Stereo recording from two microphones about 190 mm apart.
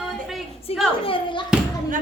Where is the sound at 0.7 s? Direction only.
30° left (ahead or behind).